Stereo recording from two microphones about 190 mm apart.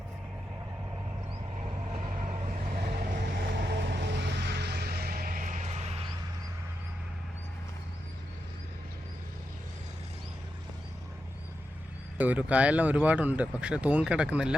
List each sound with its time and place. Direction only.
1.9 s vehicle: 40° right (ahead or behind)
12.1 s speech: 10° right (ahead or behind)